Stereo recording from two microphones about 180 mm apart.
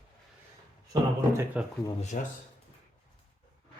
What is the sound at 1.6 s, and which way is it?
Speech, 10° right (ahead or behind).